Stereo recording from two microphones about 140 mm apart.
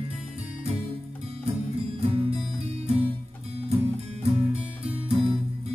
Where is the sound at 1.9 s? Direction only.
45° right (ahead or behind).